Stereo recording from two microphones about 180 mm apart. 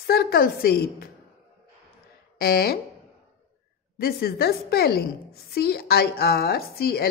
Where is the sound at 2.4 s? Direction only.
60° left (ahead or behind).